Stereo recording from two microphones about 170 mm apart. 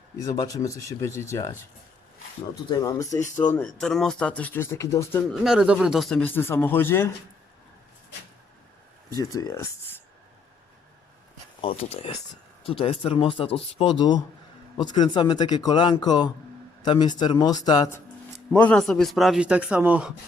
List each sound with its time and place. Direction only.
0.2 s speech: 20° left (ahead or behind)
2.6 s speech: 20° left (ahead or behind)
3.5 s speech: 5° left (ahead or behind)
5.3 s speech: centre (ahead or behind); by 7.1 s 15° left (ahead or behind)
9.0 s speech: 20° left (ahead or behind)
11.6 s speech: 35° left (ahead or behind)
18.5 s a man's voice: 10° left (ahead or behind)